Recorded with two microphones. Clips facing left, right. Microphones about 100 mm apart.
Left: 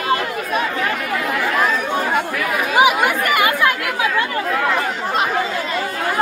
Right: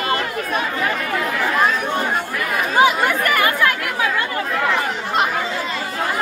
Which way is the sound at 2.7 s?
15° left (ahead or behind).